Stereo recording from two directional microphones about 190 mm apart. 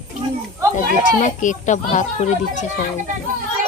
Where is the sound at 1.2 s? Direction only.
40° left (ahead or behind).